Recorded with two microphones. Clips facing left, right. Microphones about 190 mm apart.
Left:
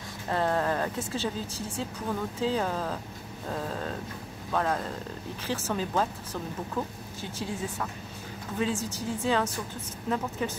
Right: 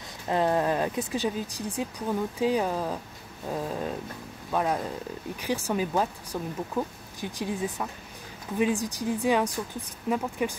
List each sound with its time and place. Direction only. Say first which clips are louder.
0.3 s a woman's voice: right 3 dB; 15° right (ahead or behind)